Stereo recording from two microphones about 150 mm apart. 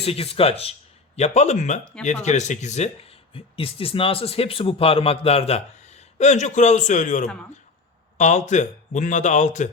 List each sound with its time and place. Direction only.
0.0 s speech: 40° left (ahead or behind)